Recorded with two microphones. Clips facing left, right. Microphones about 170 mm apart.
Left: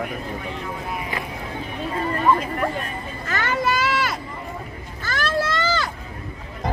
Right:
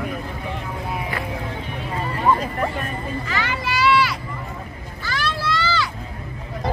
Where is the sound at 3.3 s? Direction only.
45° left (ahead or behind).